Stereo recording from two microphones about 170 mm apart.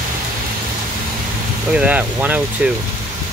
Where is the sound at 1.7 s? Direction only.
10° right (ahead or behind).